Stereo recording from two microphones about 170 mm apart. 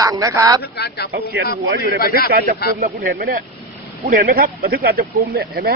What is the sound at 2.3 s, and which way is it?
Speech, 65° right (ahead or behind).